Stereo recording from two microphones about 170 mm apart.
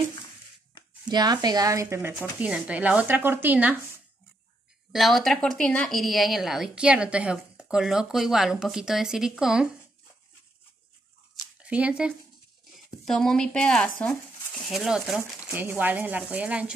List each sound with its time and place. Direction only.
1.0 s speech: 25° right (ahead or behind)
4.9 s a woman's voice: centre (ahead or behind)
11.6 s a woman's voice: 5° right (ahead or behind)